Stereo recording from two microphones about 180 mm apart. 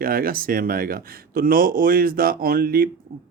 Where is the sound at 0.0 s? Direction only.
55° right (ahead or behind).